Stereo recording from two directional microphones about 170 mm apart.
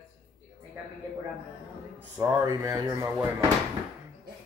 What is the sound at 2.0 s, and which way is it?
Speech, 15° right (ahead or behind).